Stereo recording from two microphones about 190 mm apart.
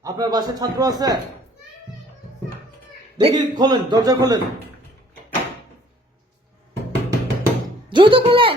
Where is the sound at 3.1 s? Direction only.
20° right (ahead or behind).